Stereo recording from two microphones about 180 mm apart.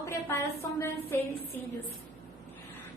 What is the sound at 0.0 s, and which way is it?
A woman's voice, 15° left (ahead or behind).